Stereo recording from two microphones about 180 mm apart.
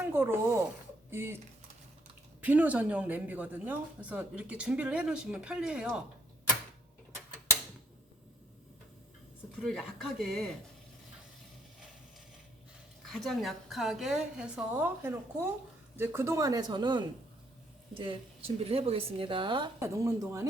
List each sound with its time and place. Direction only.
0.0 s speech: 10° right (ahead or behind)
2.4 s speech: 10° right (ahead or behind)
9.6 s a woman's voice: centre (ahead or behind)
13.1 s a woman's voice: centre (ahead or behind); by 20.5 s 20° right (ahead or behind)